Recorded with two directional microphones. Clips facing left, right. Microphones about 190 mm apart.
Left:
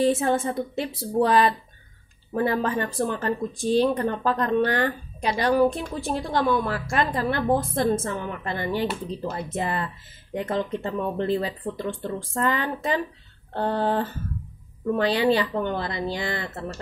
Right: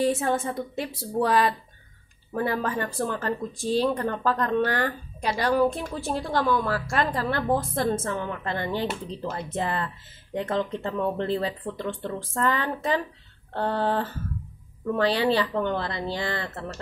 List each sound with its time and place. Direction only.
0.7 s speech: 25° left (ahead or behind)